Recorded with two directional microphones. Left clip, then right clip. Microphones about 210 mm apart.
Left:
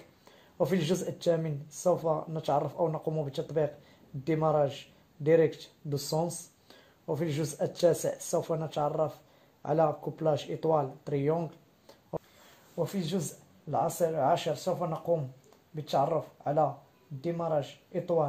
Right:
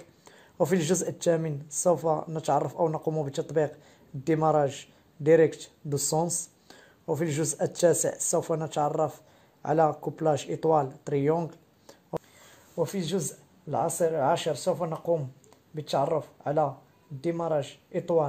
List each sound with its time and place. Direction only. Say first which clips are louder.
0.6 s a man's voice: right 4 dB; 35° right (ahead or behind)